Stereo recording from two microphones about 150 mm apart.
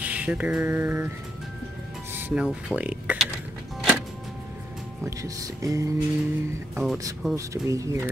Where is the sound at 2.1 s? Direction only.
15° right (ahead or behind).